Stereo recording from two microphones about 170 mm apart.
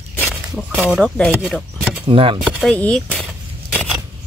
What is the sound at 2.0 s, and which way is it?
Speech, 30° right (ahead or behind).